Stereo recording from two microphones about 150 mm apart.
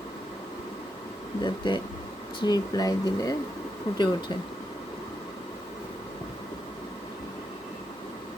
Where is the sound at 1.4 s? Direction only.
30° left (ahead or behind).